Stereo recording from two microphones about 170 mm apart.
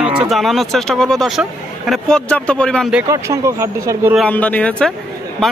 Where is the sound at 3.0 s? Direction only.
20° right (ahead or behind).